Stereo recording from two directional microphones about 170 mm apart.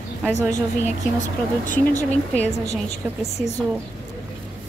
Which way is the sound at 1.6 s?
50° left (ahead or behind).